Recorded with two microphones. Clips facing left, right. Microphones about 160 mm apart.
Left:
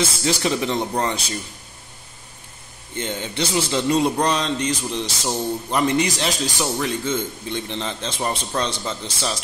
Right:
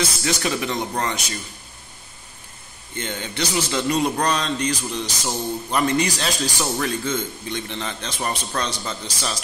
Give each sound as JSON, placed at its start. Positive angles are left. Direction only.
{"t": 0.0, "sound": "a man's voice", "side_deg": 25}
{"t": 3.0, "sound": "a man's voice", "side_deg": 25}
{"t": 7.4, "sound": "a man's voice", "side_deg": 30}